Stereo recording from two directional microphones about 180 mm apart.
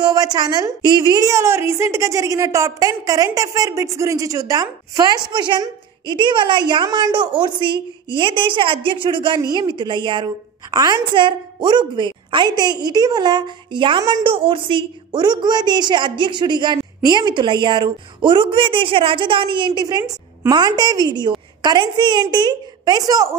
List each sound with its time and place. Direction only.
0.0 s a woman's voice: 20° right (ahead or behind)